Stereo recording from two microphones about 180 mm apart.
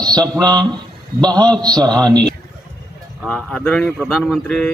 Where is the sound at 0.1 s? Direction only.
20° right (ahead or behind).